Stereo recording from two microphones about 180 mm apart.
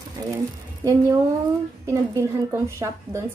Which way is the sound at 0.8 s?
20° right (ahead or behind).